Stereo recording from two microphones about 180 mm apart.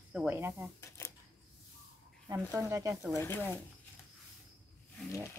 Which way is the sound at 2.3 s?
15° right (ahead or behind).